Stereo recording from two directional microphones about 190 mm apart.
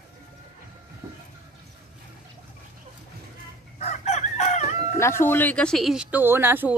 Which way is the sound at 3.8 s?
35° left (ahead or behind).